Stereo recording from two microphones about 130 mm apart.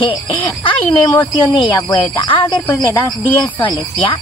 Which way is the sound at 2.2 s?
40° left (ahead or behind).